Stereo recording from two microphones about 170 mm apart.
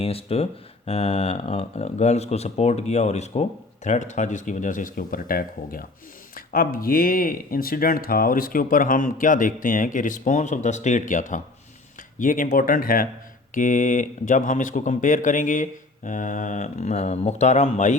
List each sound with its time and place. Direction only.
0.0 s speech: 35° left (ahead or behind)